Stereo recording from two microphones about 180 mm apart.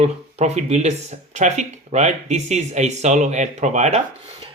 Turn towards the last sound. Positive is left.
turn(degrees=-40)  # may be behind; listen again after turning